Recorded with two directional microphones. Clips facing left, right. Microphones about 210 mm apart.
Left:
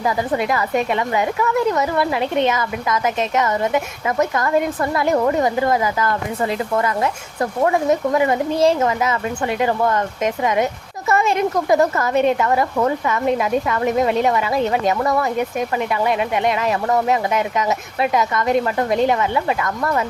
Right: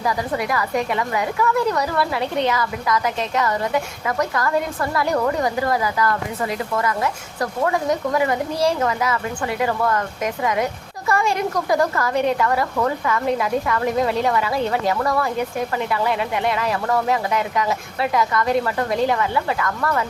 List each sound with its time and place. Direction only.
0.0 s a woman's voice: 25° left (ahead or behind)